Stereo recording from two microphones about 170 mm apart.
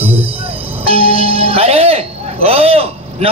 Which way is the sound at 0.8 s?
35° right (ahead or behind).